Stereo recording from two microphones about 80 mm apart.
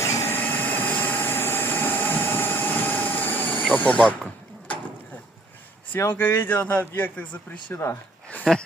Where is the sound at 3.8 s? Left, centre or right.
Centre.